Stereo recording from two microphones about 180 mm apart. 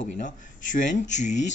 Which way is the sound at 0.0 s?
45° left (ahead or behind).